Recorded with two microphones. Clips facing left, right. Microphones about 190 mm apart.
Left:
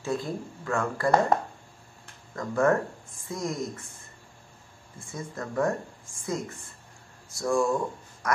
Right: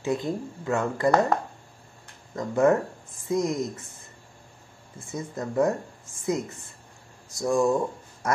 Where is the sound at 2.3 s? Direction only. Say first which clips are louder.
Right 3 dB; 20° right (ahead or behind).